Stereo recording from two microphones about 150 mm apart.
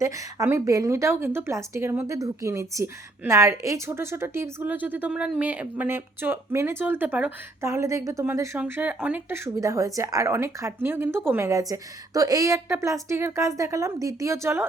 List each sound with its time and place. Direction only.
0.0 s a woman's voice: 20° right (ahead or behind)